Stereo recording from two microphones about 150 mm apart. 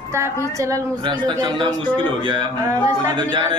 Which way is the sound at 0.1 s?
20° right (ahead or behind).